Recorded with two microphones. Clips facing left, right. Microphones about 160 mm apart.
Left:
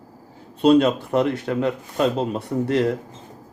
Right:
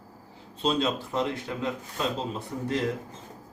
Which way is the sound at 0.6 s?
60° left (ahead or behind).